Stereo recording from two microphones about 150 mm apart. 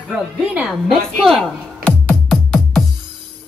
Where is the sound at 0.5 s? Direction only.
Centre (ahead or behind).